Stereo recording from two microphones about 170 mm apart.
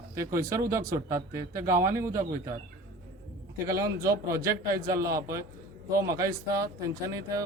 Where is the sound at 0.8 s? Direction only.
60° right (ahead or behind).